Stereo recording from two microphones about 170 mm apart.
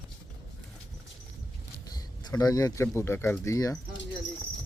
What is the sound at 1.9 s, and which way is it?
Speech, 20° left (ahead or behind).